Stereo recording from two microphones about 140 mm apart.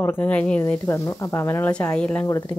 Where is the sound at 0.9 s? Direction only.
20° left (ahead or behind).